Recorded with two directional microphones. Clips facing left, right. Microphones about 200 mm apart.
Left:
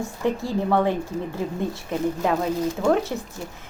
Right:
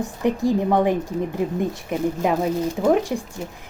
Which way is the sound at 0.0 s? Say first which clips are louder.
Right 4 dB; 15° right (ahead or behind).